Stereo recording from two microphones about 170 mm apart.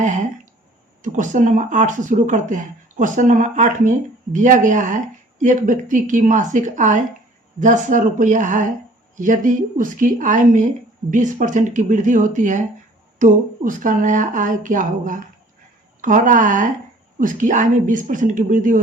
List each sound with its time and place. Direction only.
1.0 s speech: 50° right (ahead or behind)